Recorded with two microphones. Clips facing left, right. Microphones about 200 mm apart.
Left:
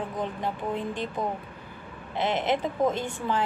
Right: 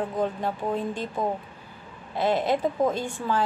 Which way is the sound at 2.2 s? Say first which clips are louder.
Right 3 dB; 20° left (ahead or behind).